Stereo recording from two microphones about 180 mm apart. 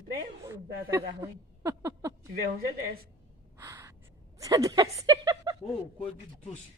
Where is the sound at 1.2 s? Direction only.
15° right (ahead or behind).